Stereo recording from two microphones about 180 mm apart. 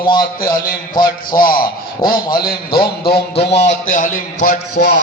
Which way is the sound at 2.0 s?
25° left (ahead or behind).